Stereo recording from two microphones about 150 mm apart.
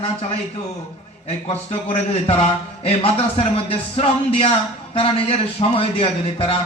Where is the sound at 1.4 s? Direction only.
40° left (ahead or behind).